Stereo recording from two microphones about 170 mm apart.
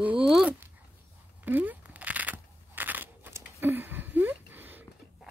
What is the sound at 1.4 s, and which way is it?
Crunch, 10° right (ahead or behind).